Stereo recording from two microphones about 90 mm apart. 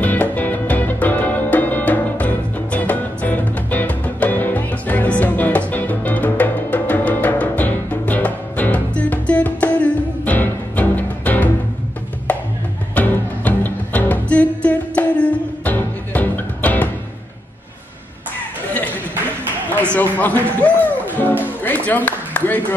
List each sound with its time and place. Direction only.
0.0 s music: 20° left (ahead or behind)
19.7 s music: 15° left (ahead or behind)
21.6 s a sound: 20° left (ahead or behind)